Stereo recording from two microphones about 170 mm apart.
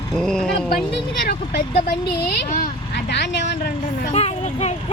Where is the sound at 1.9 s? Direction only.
80° left.